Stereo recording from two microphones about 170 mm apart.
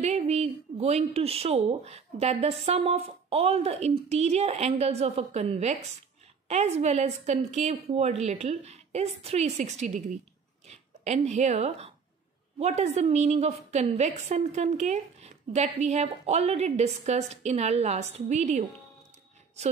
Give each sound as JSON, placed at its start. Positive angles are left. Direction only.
{"t": 0.0, "sound": "a woman's voice", "side_deg": -35}